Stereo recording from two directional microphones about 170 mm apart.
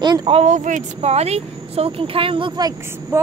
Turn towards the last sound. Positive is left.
turn(degrees=-15)  # may be behind; listen again after turning